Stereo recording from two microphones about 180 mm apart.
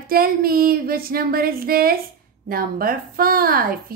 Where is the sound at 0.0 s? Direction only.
55° right (ahead or behind).